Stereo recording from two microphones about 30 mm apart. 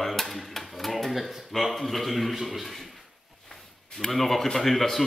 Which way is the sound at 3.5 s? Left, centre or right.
Centre.